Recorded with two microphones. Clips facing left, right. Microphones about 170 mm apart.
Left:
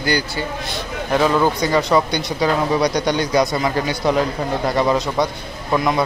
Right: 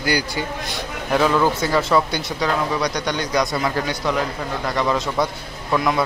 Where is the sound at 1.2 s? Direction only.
15° left (ahead or behind).